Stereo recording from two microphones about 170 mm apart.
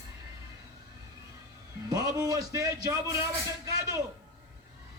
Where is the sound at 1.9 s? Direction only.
20° right (ahead or behind).